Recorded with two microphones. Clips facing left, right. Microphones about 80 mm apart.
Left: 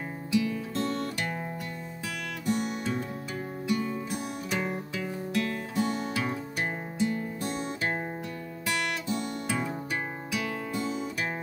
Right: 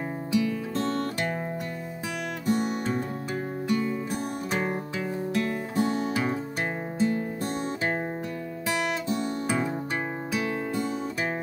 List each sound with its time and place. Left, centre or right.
0.3 s music: right
2.4 s music: right
7.0 s music: right
9.2 s music: right
10.3 s music: right